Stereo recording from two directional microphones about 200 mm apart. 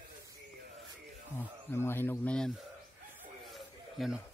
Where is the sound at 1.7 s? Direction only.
10° left (ahead or behind).